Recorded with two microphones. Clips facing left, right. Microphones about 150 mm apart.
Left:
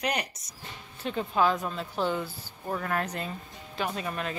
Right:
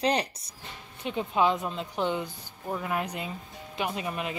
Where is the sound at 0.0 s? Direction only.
30° right (ahead or behind).